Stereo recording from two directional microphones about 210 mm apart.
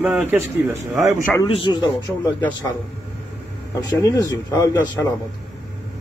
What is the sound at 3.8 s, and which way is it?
Speech, 15° left (ahead or behind).